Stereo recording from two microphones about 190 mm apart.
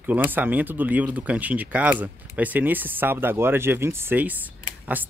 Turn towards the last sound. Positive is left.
turn(degrees=-10)  # may be behind; listen again after turning